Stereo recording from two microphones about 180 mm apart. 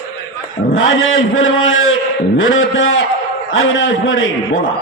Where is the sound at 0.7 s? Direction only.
90° left.